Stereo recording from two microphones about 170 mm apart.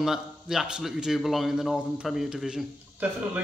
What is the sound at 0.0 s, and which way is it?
A man's voice, 5° right (ahead or behind).